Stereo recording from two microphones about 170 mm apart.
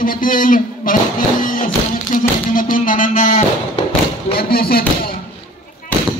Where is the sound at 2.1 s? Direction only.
50° left (ahead or behind).